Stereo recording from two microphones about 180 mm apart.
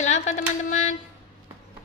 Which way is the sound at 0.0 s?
40° left (ahead or behind).